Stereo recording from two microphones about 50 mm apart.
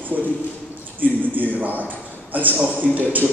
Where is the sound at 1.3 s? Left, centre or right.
Right.